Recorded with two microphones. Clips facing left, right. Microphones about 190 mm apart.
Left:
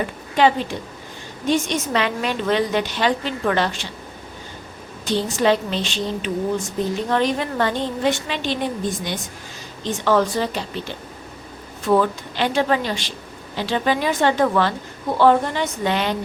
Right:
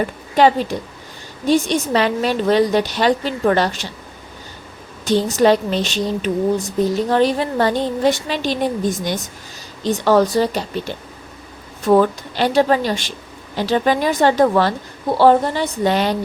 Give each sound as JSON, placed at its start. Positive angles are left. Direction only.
{"t": 0.3, "sound": "a woman's voice", "side_deg": -40}
{"t": 5.0, "sound": "a woman's voice", "side_deg": -40}
{"t": 11.9, "sound": "a woman's voice", "side_deg": -40}